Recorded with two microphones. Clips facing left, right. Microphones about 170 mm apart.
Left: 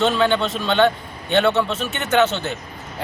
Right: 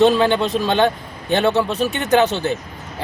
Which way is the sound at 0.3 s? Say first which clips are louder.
Right 1 dB; 15° right (ahead or behind).